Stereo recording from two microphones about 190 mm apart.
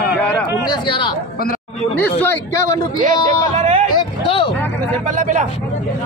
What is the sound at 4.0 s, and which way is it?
Speech, 25° left (ahead or behind).